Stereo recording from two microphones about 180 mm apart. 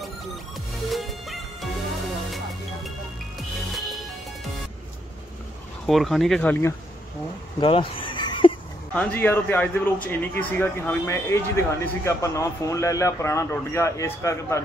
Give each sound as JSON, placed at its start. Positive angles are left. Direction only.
{"t": 0.8, "sound": "music", "side_deg": 0}
{"t": 5.9, "sound": "speech", "side_deg": 0}
{"t": 7.6, "sound": "a sound", "side_deg": 30}
{"t": 8.9, "sound": "speech", "side_deg": 10}